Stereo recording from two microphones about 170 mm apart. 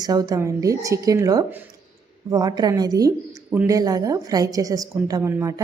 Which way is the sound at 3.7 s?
20° right (ahead or behind).